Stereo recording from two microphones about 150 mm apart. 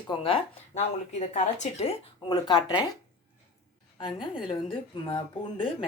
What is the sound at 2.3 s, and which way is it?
Speech, 30° left (ahead or behind).